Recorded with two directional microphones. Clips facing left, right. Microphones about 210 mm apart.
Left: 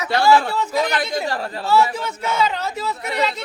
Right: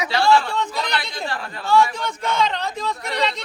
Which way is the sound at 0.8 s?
45° left (ahead or behind).